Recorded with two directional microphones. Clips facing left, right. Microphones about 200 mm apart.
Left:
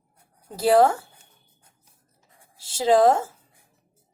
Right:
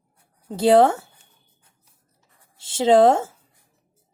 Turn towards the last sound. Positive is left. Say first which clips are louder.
# right 3 dB
turn(degrees=-25)  # may be behind; listen again after turning